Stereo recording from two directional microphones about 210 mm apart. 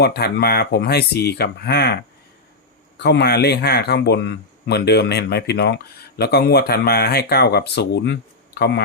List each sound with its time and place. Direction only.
0.0 s speech: 50° left (ahead or behind)
3.0 s speech: 55° left (ahead or behind)